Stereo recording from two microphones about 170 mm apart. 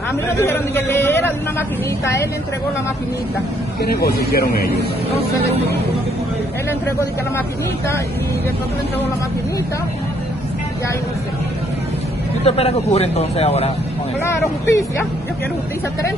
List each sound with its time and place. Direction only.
0.4 s speech: 15° left (ahead or behind)
3.8 s speech: 65° left (ahead or behind)
12.4 s a man's voice: 35° left (ahead or behind)
14.7 s speech: 15° left (ahead or behind)